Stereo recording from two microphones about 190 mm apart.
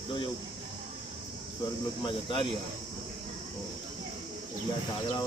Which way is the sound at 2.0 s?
25° left (ahead or behind).